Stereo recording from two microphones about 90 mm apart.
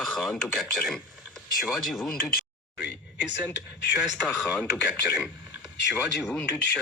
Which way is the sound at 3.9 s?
10° right (ahead or behind).